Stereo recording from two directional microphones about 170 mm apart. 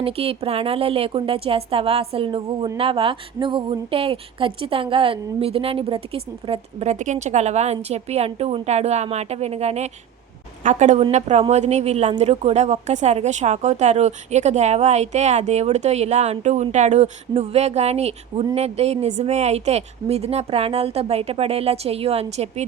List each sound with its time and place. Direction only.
0.0 s a woman's voice: 35° right (ahead or behind)